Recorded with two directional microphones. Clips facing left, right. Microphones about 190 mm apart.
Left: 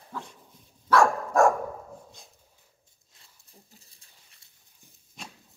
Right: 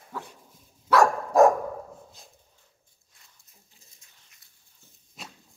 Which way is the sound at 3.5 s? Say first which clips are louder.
Left 6 dB; 35° left (ahead or behind).